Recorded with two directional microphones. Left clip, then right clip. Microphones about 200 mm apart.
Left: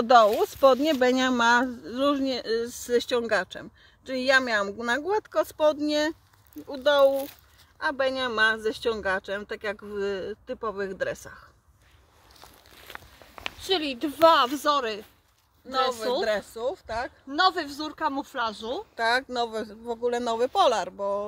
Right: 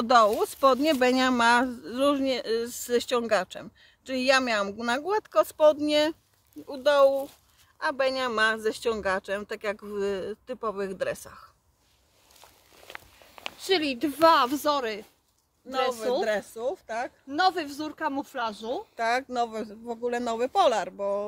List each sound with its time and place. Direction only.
0.0 s speech: 15° left (ahead or behind)
0.7 s speech: centre (ahead or behind)
13.6 s speech: 10° right (ahead or behind)
15.7 s speech: 5° left (ahead or behind)
17.3 s speech: 10° right (ahead or behind)
18.9 s speech: 15° left (ahead or behind)